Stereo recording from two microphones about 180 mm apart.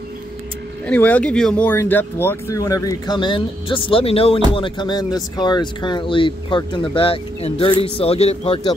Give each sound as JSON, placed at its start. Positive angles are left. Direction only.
{"t": 0.8, "sound": "speech", "side_deg": 10}